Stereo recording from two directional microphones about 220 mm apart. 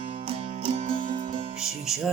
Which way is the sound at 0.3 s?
30° right (ahead or behind).